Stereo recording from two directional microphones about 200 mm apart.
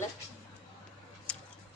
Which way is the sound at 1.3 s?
5° left (ahead or behind).